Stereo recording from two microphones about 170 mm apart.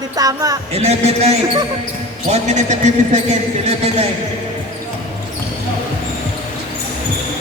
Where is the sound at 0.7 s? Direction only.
40° right (ahead or behind).